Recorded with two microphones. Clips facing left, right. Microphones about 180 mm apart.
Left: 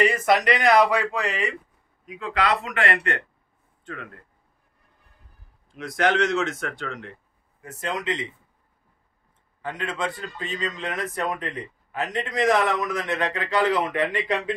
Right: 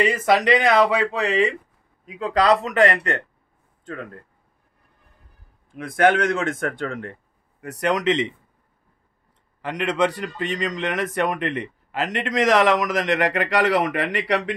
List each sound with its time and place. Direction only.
0.2 s a man's voice: 25° right (ahead or behind)
5.7 s speech: 50° right (ahead or behind)
7.6 s a man's voice: 75° right (ahead or behind)
9.6 s a man's voice: 75° right (ahead or behind)